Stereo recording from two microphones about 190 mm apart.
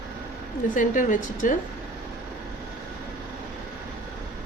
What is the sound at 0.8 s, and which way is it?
Speech, 45° left (ahead or behind).